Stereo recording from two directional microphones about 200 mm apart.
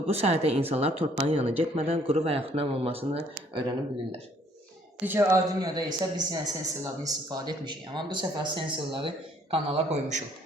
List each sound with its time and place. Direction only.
0.1 s a woman's voice: 30° right (ahead or behind)
5.0 s speech: 15° right (ahead or behind); by 10.2 s 35° right (ahead or behind)